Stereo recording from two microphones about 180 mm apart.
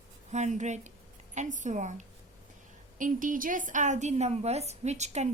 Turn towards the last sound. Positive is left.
turn(degrees=-40)  # may be behind; listen again after turning